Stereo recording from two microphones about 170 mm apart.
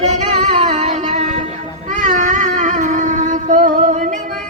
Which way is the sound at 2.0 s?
50° right (ahead or behind).